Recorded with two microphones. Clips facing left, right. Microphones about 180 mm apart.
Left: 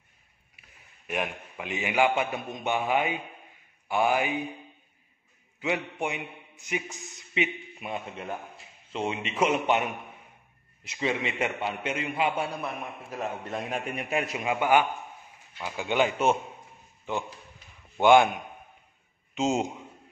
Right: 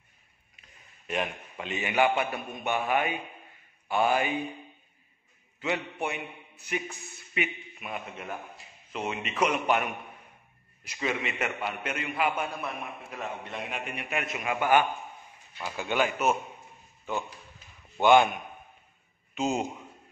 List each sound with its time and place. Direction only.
0.6 s a man's voice: 10° left (ahead or behind)
5.6 s a man's voice: 15° left (ahead or behind)
10.9 s a man's voice: 25° left (ahead or behind)
13.1 s a man's voice: 40° left (ahead or behind)
14.4 s a man's voice: 20° left (ahead or behind)